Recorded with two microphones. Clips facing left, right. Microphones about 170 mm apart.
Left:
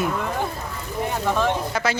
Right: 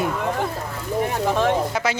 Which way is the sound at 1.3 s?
20° right (ahead or behind).